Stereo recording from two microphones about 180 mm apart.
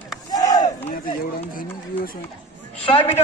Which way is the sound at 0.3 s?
20° left (ahead or behind).